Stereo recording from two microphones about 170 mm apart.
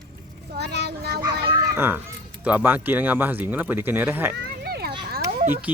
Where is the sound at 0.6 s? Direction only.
75° right (ahead or behind).